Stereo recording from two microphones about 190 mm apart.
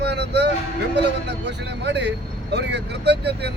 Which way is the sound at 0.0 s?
60° right (ahead or behind).